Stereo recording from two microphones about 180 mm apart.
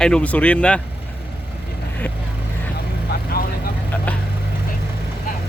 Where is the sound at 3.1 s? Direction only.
55° left (ahead or behind).